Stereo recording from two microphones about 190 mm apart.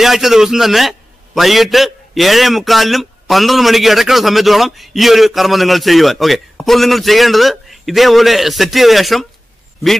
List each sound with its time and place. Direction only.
0.0 s a man's voice: centre (ahead or behind)